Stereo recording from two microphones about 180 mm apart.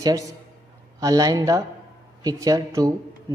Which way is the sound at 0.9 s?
20° right (ahead or behind).